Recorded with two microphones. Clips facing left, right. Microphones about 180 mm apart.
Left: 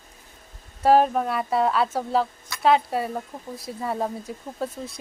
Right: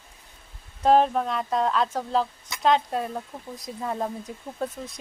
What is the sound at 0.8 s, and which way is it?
A woman's voice, 5° left (ahead or behind).